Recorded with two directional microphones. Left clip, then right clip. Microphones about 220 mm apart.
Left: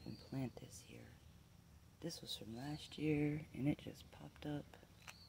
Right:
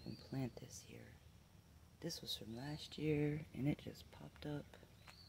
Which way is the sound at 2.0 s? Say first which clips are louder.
Right 2 dB; 15° right (ahead or behind).